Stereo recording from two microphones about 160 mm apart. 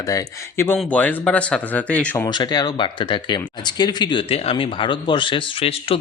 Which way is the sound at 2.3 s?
25° left (ahead or behind).